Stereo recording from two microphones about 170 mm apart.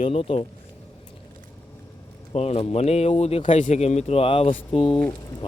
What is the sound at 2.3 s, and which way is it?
Speech, 40° left (ahead or behind).